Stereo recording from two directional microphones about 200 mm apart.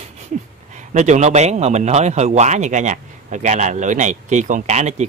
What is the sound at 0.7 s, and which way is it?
A man's voice, 35° right (ahead or behind).